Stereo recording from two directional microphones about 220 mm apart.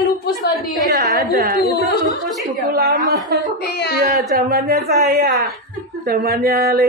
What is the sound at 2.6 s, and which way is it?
Speech, 45° right (ahead or behind).